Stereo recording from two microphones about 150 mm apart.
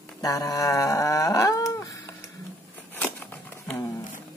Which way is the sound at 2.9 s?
10° left (ahead or behind).